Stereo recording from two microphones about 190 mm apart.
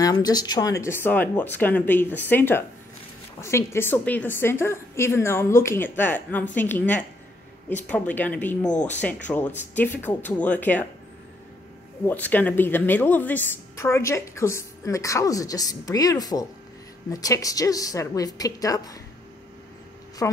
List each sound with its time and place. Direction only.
0.0 s a woman's voice: 20° left (ahead or behind)
8.6 s speech: 40° left (ahead or behind)
9.0 s a woman's voice: 10° left (ahead or behind)
12.1 s a woman's voice: 10° left (ahead or behind)
20.2 s a woman's voice: 10° left (ahead or behind)